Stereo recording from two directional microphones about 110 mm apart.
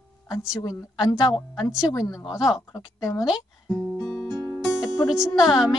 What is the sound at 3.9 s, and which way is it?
Music, 15° left (ahead or behind).